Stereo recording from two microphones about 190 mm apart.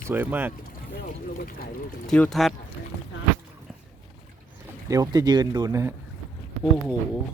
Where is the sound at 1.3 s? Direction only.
50° left (ahead or behind).